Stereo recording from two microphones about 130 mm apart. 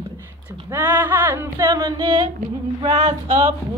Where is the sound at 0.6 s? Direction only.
15° right (ahead or behind); by 2.3 s 40° right (ahead or behind).